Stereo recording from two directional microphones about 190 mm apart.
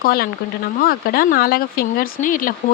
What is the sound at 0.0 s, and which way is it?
Speech, 50° left (ahead or behind).